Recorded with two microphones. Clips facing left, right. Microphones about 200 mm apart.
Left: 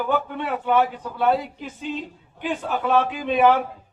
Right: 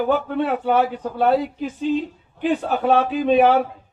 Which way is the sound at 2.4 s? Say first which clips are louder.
Right 5 dB; 40° right (ahead or behind).